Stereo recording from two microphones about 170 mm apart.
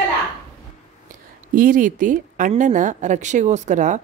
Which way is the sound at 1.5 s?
55° right (ahead or behind).